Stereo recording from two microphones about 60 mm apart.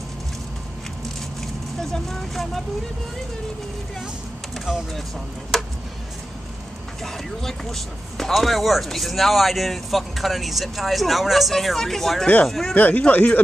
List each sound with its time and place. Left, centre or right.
1.8 s speech: centre
7.0 s speech: centre
12.7 s speech: left